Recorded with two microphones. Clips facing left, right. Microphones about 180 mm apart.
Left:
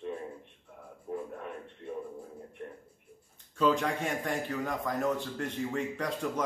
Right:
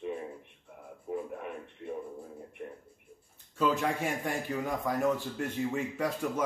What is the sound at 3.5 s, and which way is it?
A man's voice, 5° right (ahead or behind).